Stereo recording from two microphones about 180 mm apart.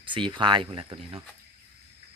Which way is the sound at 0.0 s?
25° right (ahead or behind).